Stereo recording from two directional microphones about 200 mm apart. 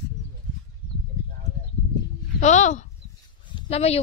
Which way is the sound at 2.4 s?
35° left (ahead or behind).